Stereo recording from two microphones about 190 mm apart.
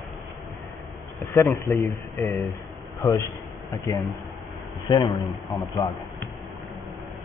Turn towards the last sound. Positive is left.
turn(degrees=20)  # may be behind; listen again after turning